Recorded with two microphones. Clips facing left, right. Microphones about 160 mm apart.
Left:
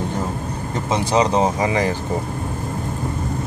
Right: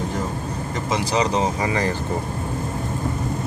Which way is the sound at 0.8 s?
25° left (ahead or behind).